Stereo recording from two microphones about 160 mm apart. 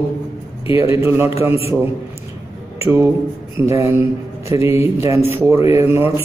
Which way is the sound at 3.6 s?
15° right (ahead or behind).